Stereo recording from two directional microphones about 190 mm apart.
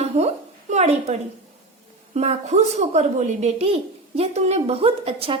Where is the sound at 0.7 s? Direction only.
35° right (ahead or behind).